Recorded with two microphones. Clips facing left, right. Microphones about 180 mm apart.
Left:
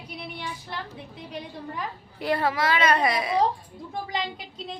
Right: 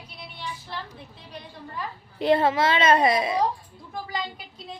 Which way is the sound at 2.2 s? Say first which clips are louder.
Right 5 dB; 25° right (ahead or behind).